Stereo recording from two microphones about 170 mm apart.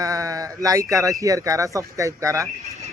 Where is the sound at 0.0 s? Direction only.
20° right (ahead or behind).